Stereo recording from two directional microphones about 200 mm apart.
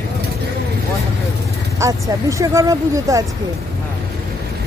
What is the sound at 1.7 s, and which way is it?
Speech, 15° right (ahead or behind).